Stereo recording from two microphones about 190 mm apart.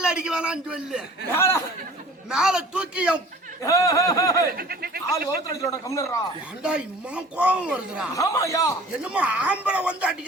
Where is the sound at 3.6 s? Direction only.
15° left (ahead or behind).